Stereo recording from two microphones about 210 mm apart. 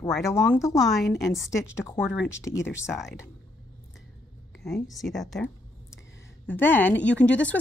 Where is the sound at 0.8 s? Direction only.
Centre (ahead or behind).